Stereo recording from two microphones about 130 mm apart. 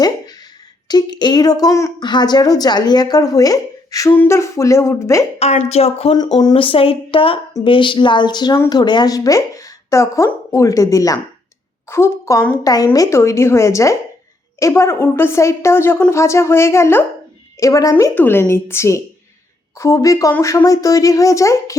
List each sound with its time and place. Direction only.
0.9 s a woman's voice: 30° left (ahead or behind)
5.4 s speech: 55° left (ahead or behind)
6.3 s a woman's voice: 35° left (ahead or behind)
17.9 s speech: 15° left (ahead or behind)